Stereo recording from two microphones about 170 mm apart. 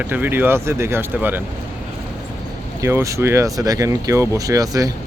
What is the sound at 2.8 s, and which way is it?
Speech, 15° right (ahead or behind).